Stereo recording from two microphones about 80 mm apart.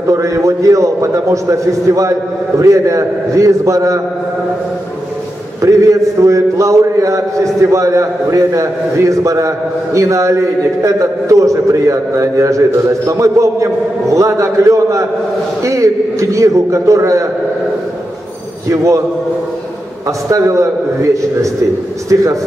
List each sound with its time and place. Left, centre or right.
0.0 s a man's voice: right
5.6 s a man's voice: right
20.1 s a man's voice: right